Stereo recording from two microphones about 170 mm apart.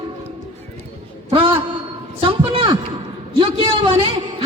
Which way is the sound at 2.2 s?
35° right (ahead or behind).